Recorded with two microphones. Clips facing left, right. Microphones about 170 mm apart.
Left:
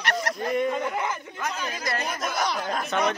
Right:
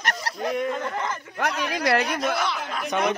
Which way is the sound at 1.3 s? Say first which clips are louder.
Right 5 dB; 70° right (ahead or behind).